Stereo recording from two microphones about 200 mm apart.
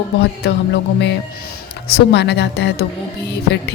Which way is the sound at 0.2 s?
55° left (ahead or behind).